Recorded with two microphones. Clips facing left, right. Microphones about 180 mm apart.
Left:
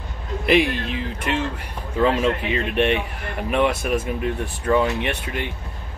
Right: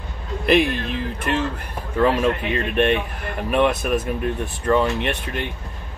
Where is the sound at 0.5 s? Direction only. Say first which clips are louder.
Right 1 dB; 50° right (ahead or behind).